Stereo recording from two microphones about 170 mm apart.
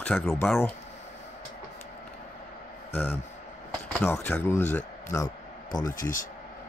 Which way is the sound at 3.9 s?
10° left (ahead or behind).